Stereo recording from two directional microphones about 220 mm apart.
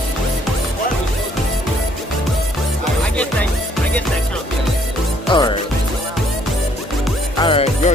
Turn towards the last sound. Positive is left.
turn(degrees=25)  # may be behind; listen again after turning